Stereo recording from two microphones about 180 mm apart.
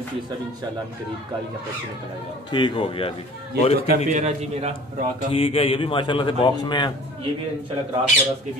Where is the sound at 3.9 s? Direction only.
40° right (ahead or behind).